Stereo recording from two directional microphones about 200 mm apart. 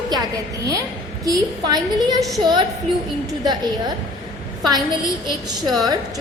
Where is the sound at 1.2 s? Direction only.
20° right (ahead or behind).